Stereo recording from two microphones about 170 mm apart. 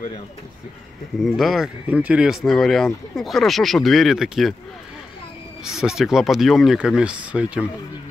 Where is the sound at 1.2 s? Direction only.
Centre (ahead or behind).